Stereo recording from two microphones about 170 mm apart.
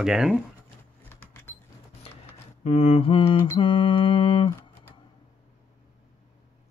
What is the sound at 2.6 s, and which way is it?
Mantra, 40° left (ahead or behind).